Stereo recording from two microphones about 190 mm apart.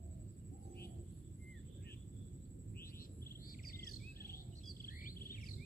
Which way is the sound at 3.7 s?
50° left (ahead or behind).